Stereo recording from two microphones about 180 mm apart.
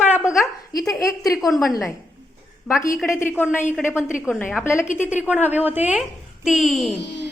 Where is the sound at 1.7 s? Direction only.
20° left (ahead or behind).